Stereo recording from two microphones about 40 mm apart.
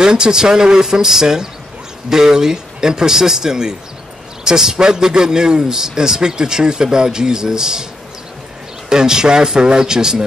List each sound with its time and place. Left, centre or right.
0.0 s a man's voice: centre
8.8 s a man's voice: centre